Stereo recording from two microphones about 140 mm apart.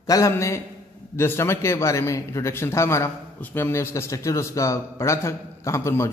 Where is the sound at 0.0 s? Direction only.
25° left (ahead or behind).